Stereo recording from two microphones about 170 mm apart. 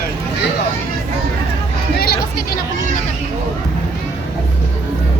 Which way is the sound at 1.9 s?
65° left (ahead or behind).